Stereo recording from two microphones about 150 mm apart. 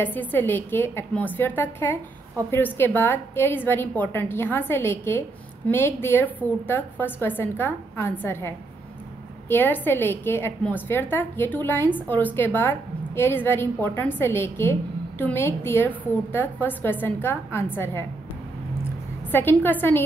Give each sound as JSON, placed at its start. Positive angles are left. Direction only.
{"t": 0.0, "sound": "a woman's voice", "side_deg": 10}
{"t": 19.3, "sound": "a woman's voice", "side_deg": 15}